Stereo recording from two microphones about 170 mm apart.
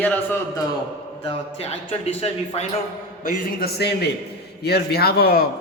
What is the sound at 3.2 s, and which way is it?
A man's voice, 55° left (ahead or behind).